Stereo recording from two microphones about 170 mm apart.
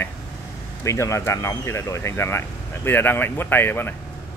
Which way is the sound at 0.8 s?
15° left (ahead or behind).